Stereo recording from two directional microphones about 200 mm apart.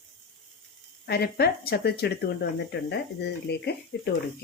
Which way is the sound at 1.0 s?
55° left (ahead or behind).